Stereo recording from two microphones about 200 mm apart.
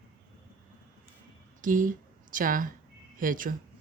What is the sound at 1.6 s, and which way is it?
Speech, 40° right (ahead or behind).